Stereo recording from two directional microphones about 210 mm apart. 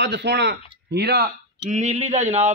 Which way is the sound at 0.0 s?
55° right (ahead or behind).